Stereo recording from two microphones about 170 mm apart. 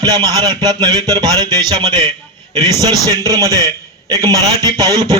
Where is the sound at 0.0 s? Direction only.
25° right (ahead or behind).